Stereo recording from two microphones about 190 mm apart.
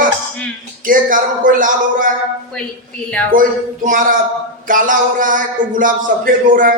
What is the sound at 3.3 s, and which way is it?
A man's voice, 45° right (ahead or behind).